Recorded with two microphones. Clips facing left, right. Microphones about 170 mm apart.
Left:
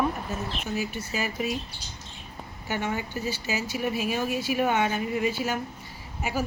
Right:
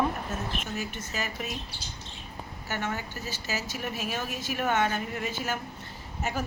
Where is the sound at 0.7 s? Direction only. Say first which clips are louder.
Left 4 dB; 10° left (ahead or behind).